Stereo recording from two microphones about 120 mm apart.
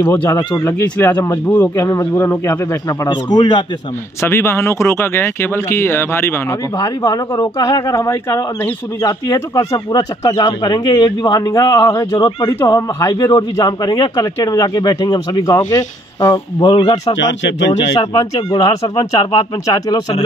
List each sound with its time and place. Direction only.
0.1 s speech: 20° left (ahead or behind)
3.1 s a man's voice: 35° left (ahead or behind)
4.2 s speech: 20° left (ahead or behind)
7.0 s a man's voice: 35° left (ahead or behind)
17.9 s a man's voice: 35° left (ahead or behind)